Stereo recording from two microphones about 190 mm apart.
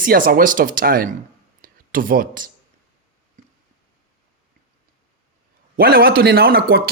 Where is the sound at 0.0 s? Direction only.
50° right (ahead or behind).